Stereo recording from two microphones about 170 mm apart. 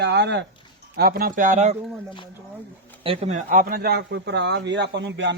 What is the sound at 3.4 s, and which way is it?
A man's voice, 60° right (ahead or behind).